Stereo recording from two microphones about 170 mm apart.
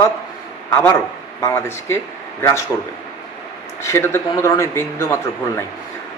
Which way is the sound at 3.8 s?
15° left (ahead or behind).